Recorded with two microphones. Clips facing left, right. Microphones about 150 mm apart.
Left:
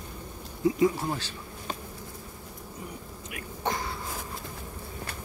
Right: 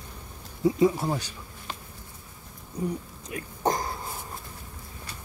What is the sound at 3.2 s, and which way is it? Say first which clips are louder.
Cough: right 5 dB; 35° right (ahead or behind).